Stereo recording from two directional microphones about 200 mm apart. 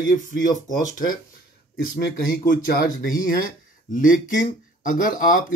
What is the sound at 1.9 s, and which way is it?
Speech, 45° left (ahead or behind).